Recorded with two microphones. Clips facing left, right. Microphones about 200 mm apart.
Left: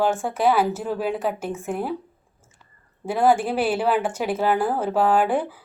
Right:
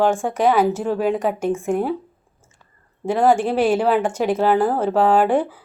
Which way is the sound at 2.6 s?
10° left (ahead or behind).